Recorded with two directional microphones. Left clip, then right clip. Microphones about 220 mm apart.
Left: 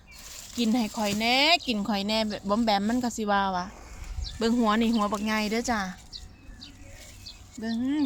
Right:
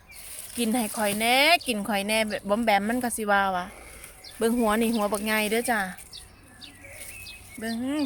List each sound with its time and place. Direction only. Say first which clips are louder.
0.5 s speech: right 1 dB; centre (ahead or behind)
7.6 s speech: even; centre (ahead or behind)